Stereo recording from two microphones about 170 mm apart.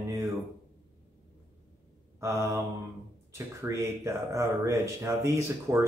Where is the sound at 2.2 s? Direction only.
15° right (ahead or behind).